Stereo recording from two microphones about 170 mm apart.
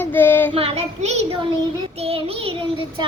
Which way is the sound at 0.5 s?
35° right (ahead or behind).